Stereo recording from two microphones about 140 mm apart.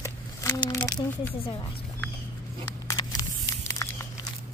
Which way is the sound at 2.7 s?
25° left (ahead or behind).